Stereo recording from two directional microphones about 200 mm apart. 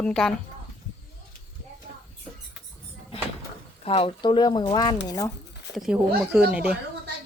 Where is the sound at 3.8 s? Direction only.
30° left (ahead or behind).